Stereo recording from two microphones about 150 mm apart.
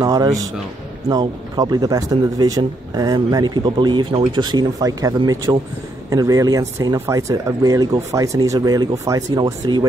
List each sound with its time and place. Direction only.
0.0 s speech: 25° right (ahead or behind)
1.6 s speech: 25° right (ahead or behind)